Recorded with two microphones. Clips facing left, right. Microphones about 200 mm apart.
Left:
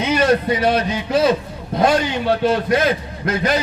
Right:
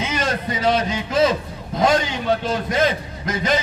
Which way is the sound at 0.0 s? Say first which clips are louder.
Left 7 dB; 65° left (ahead or behind).